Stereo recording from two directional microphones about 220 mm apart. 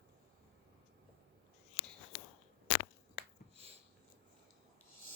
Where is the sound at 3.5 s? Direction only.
25° right (ahead or behind).